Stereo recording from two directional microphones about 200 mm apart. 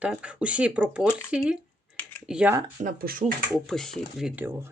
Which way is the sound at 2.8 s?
45° right (ahead or behind).